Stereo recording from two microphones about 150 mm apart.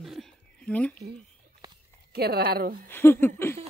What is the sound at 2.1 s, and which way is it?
Speech, 90° right.